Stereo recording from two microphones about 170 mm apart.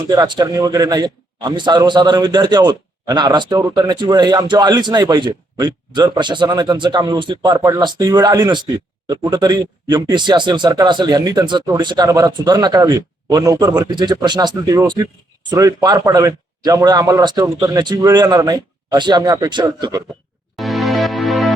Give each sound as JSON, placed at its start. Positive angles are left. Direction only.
{"t": 0.1, "sound": "a man's voice", "side_deg": -20}
{"t": 20.6, "sound": "music", "side_deg": 0}